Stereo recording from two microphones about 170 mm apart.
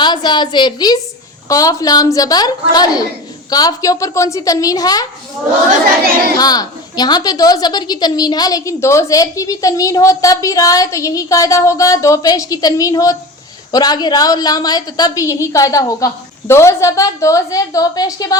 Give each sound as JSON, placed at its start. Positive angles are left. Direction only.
{"t": 0.0, "sound": "a woman's voice", "side_deg": 25}
{"t": 6.4, "sound": "a woman's voice", "side_deg": 25}